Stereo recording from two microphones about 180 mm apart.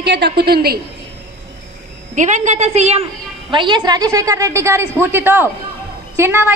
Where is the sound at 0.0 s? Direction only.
70° right (ahead or behind).